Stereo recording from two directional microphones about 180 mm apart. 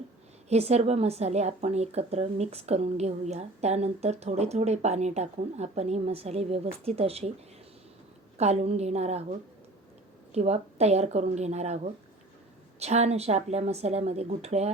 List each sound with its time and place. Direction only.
0.4 s a woman's voice: 35° right (ahead or behind)
8.4 s a woman's voice: 35° right (ahead or behind)
10.3 s a woman's voice: 35° right (ahead or behind)
12.8 s a woman's voice: 35° right (ahead or behind)